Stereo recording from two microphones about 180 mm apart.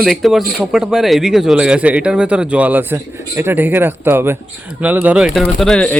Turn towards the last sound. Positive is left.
turn(degrees=5)  # may be behind; listen again after turning